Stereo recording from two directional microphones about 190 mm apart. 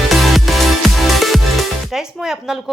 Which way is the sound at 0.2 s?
Centre (ahead or behind).